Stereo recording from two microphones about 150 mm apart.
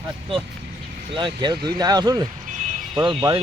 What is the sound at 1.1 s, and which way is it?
Speech, 30° right (ahead or behind).